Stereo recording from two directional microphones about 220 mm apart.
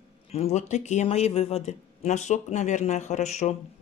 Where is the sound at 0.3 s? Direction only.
30° left (ahead or behind).